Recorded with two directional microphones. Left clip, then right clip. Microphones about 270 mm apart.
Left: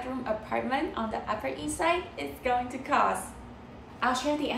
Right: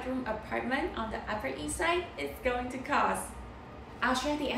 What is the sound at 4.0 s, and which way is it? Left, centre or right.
Speech, centre.